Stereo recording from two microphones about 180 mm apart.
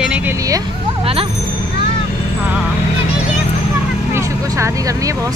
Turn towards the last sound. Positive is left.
turn(degrees=-20)  # may be behind; listen again after turning